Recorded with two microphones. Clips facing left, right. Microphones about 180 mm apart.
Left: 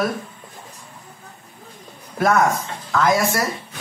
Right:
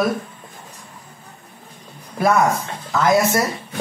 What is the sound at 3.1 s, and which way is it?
Speech, 20° right (ahead or behind).